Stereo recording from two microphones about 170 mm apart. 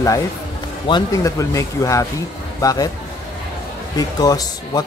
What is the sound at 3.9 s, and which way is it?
Speech, 20° left (ahead or behind).